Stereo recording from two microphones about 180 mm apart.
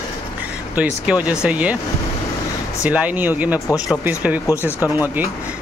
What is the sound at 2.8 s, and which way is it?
Speech, 10° right (ahead or behind).